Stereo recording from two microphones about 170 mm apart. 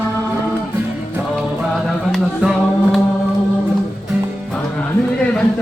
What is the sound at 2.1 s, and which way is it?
Music, centre (ahead or behind).